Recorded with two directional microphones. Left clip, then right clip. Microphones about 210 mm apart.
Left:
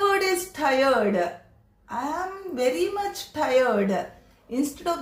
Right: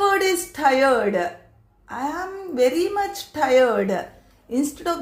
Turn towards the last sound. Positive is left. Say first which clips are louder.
# right 3 dB
turn(degrees=-40)  # may be behind; listen again after turning